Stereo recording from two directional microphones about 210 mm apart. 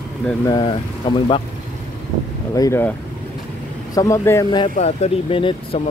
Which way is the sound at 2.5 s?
15° left (ahead or behind).